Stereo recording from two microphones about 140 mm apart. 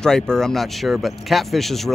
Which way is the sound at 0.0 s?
5° left (ahead or behind).